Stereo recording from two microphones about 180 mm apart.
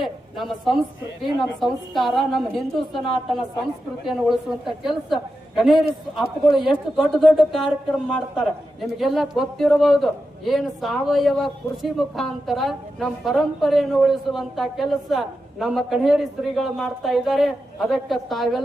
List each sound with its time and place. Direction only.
0.0 s a man's voice: centre (ahead or behind)